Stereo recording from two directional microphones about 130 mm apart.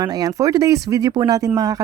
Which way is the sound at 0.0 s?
30° right (ahead or behind).